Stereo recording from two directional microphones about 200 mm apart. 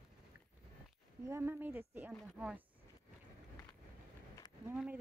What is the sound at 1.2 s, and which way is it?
Speech, 10° right (ahead or behind).